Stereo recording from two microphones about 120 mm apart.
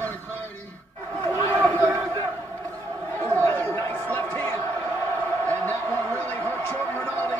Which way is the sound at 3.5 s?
15° left (ahead or behind).